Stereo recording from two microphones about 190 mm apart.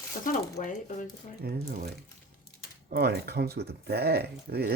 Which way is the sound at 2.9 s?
60° right (ahead or behind).